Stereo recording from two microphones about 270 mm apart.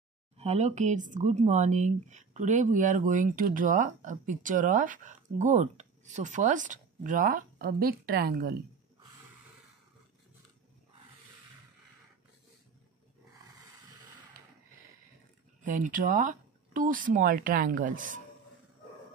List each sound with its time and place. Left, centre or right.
0.4 s speech: right
15.6 s speech: right